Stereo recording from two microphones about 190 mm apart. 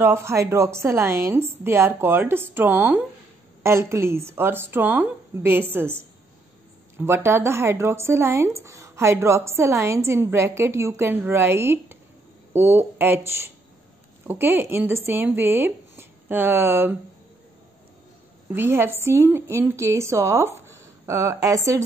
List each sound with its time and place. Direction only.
0.0 s speech: 15° right (ahead or behind)
18.5 s speech: 10° right (ahead or behind)